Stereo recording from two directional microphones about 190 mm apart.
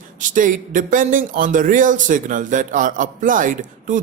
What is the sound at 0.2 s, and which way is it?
A man's voice, 45° right (ahead or behind).